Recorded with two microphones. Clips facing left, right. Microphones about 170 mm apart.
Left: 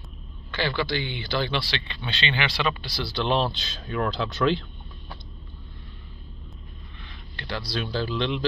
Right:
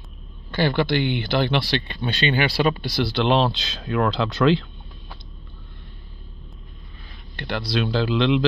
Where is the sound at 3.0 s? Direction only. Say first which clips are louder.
Right 5 dB; 65° right (ahead or behind); by 4.6 s 90° right.